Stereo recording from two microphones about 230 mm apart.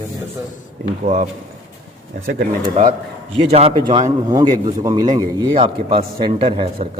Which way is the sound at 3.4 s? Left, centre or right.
Right.